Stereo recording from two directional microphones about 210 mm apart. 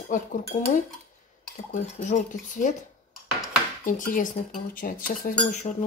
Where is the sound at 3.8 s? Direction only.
40° left (ahead or behind).